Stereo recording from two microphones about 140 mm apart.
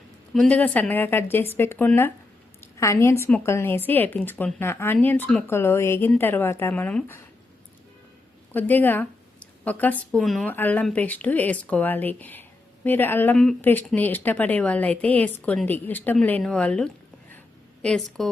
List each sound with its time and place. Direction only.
0.3 s a woman's voice: 10° left (ahead or behind)
8.5 s a woman's voice: 10° left (ahead or behind)
10.5 s a woman's voice: 15° left (ahead or behind)
13.3 s a woman's voice: 5° left (ahead or behind)